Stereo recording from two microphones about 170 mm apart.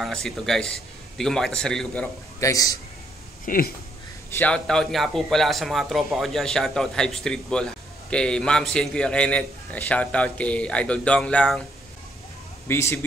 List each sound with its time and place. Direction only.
0.0 s speech: 5° left (ahead or behind)
2.4 s a man's voice: 20° left (ahead or behind)
3.4 s speech: 55° left (ahead or behind)
4.3 s speech: 10° left (ahead or behind)
12.6 s speech: 15° left (ahead or behind)